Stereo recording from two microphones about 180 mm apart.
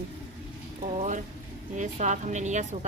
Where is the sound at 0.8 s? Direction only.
35° right (ahead or behind).